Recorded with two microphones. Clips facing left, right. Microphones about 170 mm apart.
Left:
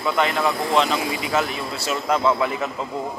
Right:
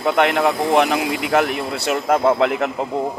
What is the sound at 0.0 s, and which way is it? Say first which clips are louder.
Speech: right 5 dB; 65° right (ahead or behind).